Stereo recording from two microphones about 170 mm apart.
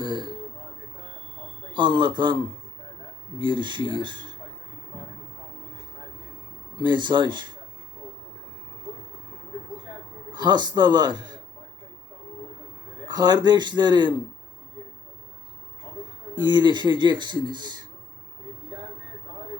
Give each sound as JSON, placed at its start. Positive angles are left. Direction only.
{"t": 0.0, "sound": "speech", "side_deg": -25}
{"t": 1.7, "sound": "a man's voice", "side_deg": -25}
{"t": 6.7, "sound": "a man's voice", "side_deg": -25}
{"t": 10.3, "sound": "a man's voice", "side_deg": -25}
{"t": 13.1, "sound": "a man's voice", "side_deg": -25}
{"t": 16.3, "sound": "a man's voice", "side_deg": -25}